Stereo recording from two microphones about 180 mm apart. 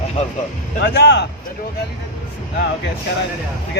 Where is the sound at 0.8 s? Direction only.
70° left (ahead or behind).